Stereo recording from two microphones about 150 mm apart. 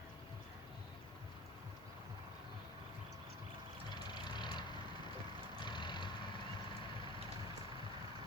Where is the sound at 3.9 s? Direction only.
30° left (ahead or behind).